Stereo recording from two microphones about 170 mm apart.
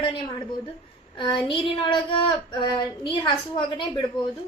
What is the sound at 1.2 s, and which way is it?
A woman's voice, 25° left (ahead or behind).